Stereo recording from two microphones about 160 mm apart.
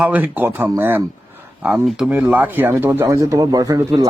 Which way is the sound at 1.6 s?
5° right (ahead or behind).